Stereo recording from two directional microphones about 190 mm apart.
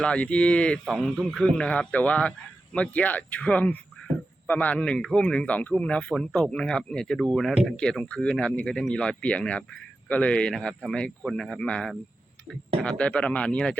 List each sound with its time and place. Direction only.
0.0 s a man's voice: 5° left (ahead or behind)